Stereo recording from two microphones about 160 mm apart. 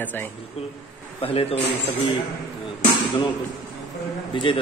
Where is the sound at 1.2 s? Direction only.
35° left (ahead or behind).